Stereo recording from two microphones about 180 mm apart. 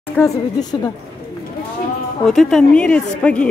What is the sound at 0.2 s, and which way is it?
Speech, 20° left (ahead or behind).